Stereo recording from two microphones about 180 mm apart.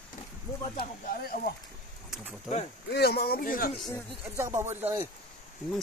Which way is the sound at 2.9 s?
60° left (ahead or behind).